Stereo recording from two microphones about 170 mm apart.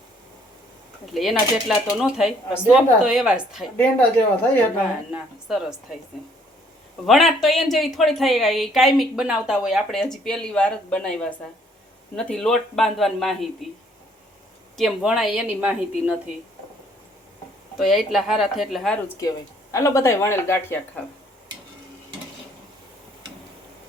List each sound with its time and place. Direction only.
1.1 s speech: centre (ahead or behind)
3.8 s a woman's voice: 10° left (ahead or behind)
5.1 s speech: 5° right (ahead or behind)
7.0 s speech: centre (ahead or behind)
14.8 s speech: centre (ahead or behind)
17.7 s speech: centre (ahead or behind)
19.0 s a woman's voice: 20° left (ahead or behind)